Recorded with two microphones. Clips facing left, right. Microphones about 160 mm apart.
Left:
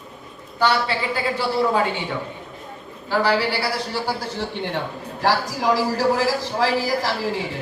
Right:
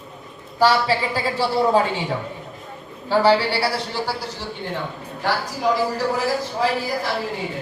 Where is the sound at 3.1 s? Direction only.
30° right (ahead or behind).